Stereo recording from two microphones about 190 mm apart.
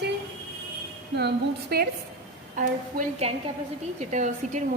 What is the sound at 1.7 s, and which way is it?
Speech, 55° right (ahead or behind).